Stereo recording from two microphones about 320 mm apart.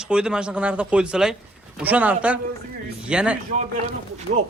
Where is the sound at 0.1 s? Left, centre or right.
Centre.